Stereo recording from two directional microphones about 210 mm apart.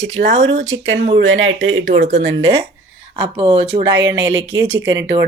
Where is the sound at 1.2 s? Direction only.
60° right (ahead or behind).